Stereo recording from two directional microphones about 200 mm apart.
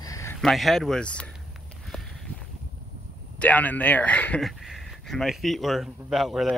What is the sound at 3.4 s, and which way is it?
Speech, 5° left (ahead or behind).